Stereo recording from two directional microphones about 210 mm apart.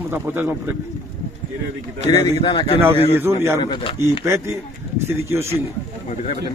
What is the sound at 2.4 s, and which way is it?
Speech, 20° left (ahead or behind).